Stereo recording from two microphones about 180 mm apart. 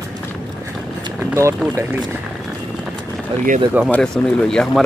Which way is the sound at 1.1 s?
15° right (ahead or behind).